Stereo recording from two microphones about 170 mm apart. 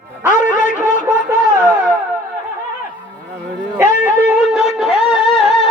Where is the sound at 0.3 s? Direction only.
50° left (ahead or behind).